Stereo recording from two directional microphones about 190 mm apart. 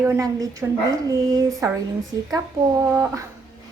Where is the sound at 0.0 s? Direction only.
15° right (ahead or behind).